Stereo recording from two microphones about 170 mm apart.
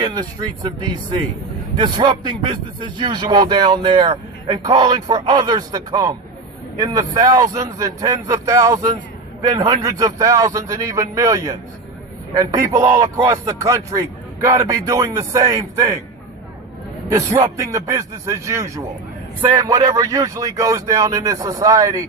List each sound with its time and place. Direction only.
0.0 s a man's voice: 25° right (ahead or behind)
17.1 s a man's voice: 20° right (ahead or behind)